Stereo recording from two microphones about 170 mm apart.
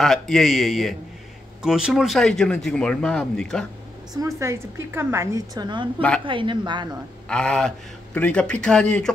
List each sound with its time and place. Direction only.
0.0 s speech: centre (ahead or behind)
4.4 s a woman's voice: 15° right (ahead or behind)
5.9 s a woman's voice: 5° left (ahead or behind)
6.2 s speech: 30° right (ahead or behind)
7.2 s speech: 5° left (ahead or behind)